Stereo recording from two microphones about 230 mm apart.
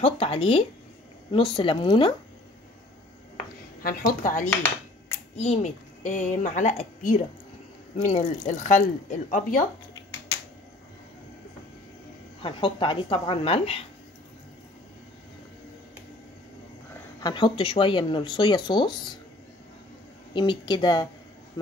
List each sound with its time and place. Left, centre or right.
0.0 s speech: left
3.8 s a woman's voice: left
12.4 s speech: left
17.2 s speech: centre
20.3 s a woman's voice: centre